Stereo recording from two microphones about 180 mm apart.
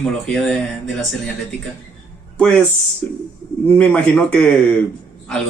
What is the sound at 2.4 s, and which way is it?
A man's voice, 5° left (ahead or behind).